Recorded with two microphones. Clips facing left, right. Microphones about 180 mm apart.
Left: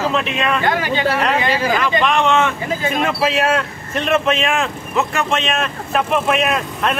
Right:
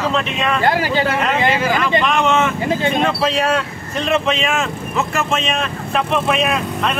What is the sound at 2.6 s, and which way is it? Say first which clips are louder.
Speech: right 3 dB; 30° right (ahead or behind).